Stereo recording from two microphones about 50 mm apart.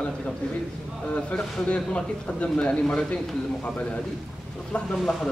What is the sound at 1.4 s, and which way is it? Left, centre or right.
Speech, centre.